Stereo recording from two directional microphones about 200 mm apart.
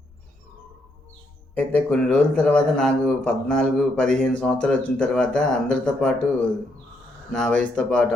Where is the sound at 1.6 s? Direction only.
5° left (ahead or behind).